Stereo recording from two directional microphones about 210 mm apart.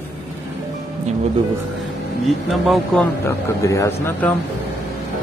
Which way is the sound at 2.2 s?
Centre (ahead or behind).